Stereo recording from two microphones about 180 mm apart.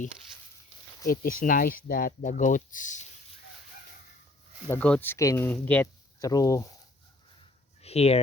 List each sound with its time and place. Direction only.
1.0 s speech: 55° left (ahead or behind)
4.7 s speech: 10° left (ahead or behind)
6.1 s speech: 20° left (ahead or behind)
7.8 s a sound: 35° left (ahead or behind)